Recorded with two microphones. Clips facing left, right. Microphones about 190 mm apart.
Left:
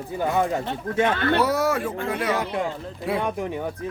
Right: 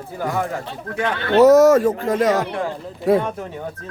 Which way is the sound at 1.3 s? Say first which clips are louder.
Right 11 dB; 45° right (ahead or behind).